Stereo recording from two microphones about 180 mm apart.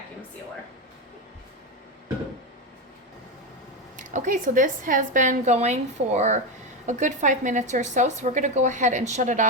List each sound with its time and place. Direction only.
3.9 s a woman's voice: 45° right (ahead or behind)